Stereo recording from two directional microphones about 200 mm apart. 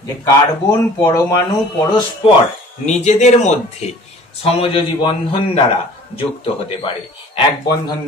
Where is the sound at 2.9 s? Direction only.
35° left (ahead or behind).